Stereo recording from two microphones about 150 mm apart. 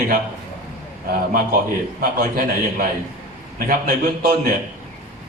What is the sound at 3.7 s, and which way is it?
Speech, 85° right.